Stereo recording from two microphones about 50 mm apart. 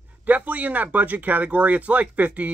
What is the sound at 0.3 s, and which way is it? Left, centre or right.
Speech, right.